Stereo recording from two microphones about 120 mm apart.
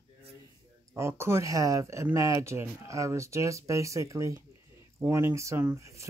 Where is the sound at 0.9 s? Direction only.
20° right (ahead or behind).